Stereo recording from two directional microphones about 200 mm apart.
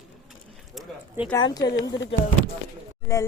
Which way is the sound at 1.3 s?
20° left (ahead or behind).